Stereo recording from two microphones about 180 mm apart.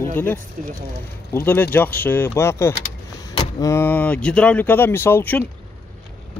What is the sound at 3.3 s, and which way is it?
Vehicle, 25° left (ahead or behind).